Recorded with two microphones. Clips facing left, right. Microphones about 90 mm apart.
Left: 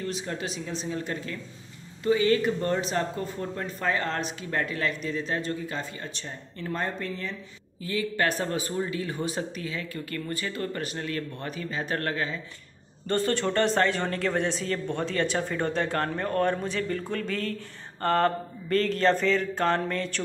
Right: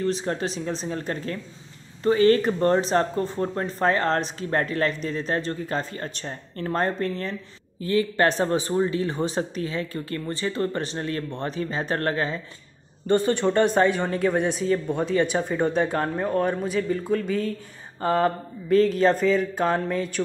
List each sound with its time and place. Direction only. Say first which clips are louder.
0.0 s speech: right 7 dB; 35° right (ahead or behind)
13.0 s speech: right 5 dB; 15° right (ahead or behind)